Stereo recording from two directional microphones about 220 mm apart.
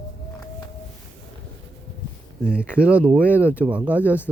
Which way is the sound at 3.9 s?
10° left (ahead or behind).